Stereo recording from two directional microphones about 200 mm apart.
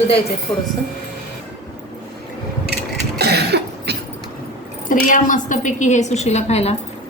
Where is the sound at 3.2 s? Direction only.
55° right (ahead or behind).